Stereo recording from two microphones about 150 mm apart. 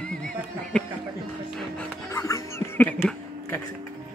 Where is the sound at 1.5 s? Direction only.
5° left (ahead or behind).